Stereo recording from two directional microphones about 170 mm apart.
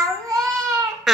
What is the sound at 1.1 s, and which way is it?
Babbling, centre (ahead or behind).